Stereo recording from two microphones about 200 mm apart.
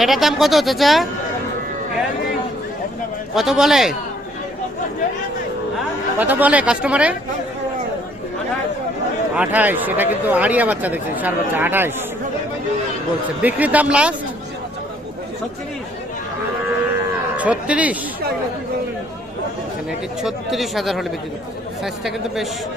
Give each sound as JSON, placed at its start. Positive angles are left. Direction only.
{"t": 0.0, "sound": "speech", "side_deg": 0}
{"t": 3.3, "sound": "speech", "side_deg": 0}
{"t": 6.1, "sound": "speech", "side_deg": -10}
{"t": 9.3, "sound": "speech", "side_deg": -5}
{"t": 13.4, "sound": "speech", "side_deg": -10}
{"t": 17.3, "sound": "speech", "side_deg": -5}
{"t": 20.2, "sound": "speech", "side_deg": 0}